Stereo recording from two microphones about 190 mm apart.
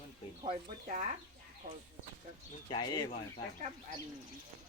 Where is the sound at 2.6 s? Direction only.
25° left (ahead or behind).